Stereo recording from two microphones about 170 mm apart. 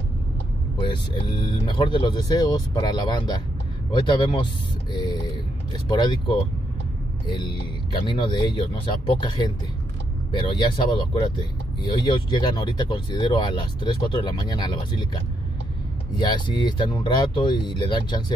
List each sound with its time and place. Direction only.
1.1 s speech: 30° left (ahead or behind)
5.9 s speech: 30° left (ahead or behind)
16.2 s speech: 25° left (ahead or behind)